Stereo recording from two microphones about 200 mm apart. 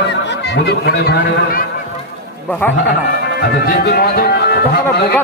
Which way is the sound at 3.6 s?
50° left (ahead or behind).